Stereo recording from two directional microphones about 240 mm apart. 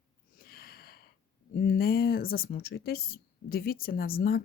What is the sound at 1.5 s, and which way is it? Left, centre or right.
Speech, left.